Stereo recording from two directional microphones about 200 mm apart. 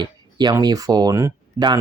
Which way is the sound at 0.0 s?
20° right (ahead or behind).